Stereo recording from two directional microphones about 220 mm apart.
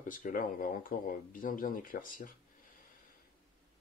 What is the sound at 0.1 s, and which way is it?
Speech, 40° left (ahead or behind).